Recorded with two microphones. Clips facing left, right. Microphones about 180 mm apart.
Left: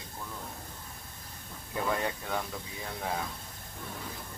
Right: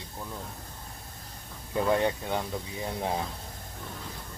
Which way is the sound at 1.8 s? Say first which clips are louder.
Right 6 dB; 25° right (ahead or behind).